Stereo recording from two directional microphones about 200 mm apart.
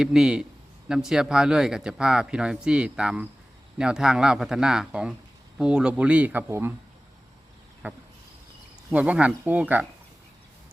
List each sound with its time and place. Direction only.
0.0 s speech: 5° right (ahead or behind)
7.8 s speech: 10° right (ahead or behind)